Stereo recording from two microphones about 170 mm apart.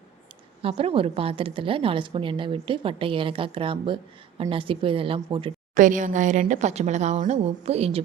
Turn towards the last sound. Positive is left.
turn(degrees=-35)  # may be behind; listen again after turning